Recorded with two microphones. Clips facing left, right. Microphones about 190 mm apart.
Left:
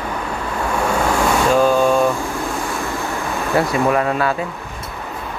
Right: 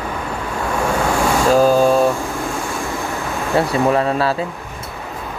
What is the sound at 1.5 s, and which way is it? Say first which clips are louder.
Speech: right 3 dB; 35° right (ahead or behind).